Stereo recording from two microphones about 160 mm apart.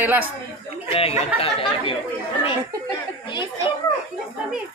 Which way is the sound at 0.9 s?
40° left (ahead or behind).